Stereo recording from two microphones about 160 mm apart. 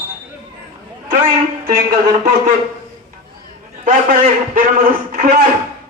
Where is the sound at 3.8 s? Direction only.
60° right (ahead or behind).